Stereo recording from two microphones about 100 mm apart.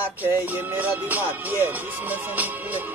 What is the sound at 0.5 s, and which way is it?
Music, 20° right (ahead or behind).